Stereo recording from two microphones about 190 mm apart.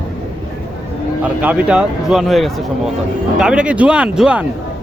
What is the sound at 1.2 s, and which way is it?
Speech, 10° right (ahead or behind).